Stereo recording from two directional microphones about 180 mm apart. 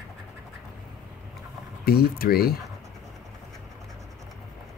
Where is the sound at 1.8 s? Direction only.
60° left (ahead or behind).